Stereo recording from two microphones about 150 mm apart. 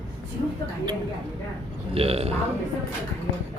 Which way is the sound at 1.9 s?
40° right (ahead or behind).